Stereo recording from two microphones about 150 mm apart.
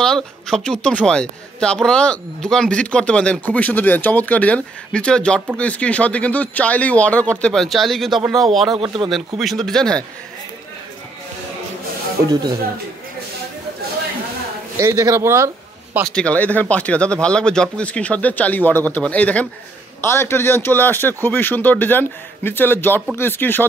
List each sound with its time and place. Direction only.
0.0 s a sound: 5° left (ahead or behind)
0.7 s speech: 5° left (ahead or behind)
8.7 s speech: 35° right (ahead or behind)
9.4 s speech: centre (ahead or behind)
14.8 s speech: 20° right (ahead or behind)
16.1 s speech: 5° left (ahead or behind)